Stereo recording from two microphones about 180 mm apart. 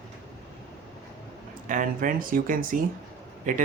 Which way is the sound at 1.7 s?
50° right (ahead or behind).